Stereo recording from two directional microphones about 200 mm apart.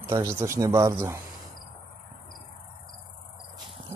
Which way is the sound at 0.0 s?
20° right (ahead or behind).